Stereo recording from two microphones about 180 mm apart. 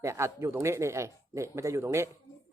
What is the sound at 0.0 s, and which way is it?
Speech, 15° right (ahead or behind).